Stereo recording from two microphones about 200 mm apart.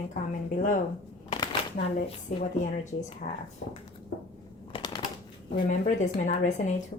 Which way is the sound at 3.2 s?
35° left (ahead or behind).